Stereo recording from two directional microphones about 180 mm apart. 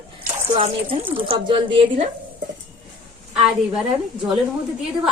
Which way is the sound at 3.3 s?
5° right (ahead or behind).